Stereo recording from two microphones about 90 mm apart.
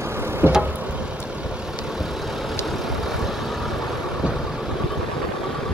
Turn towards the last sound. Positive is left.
turn(degrees=-5)  # may be behind; listen again after turning